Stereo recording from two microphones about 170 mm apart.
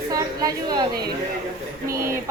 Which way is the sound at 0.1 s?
20° right (ahead or behind).